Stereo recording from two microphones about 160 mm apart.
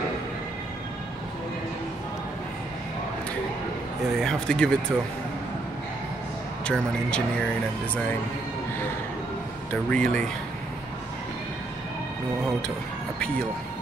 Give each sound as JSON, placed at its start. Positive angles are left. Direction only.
{"t": 4.2, "sound": "speech", "side_deg": 5}
{"t": 6.6, "sound": "speech", "side_deg": 5}
{"t": 9.8, "sound": "speech", "side_deg": 5}